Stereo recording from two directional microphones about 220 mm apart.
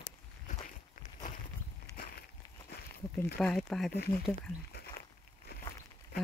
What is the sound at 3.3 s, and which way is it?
Speech, 5° left (ahead or behind).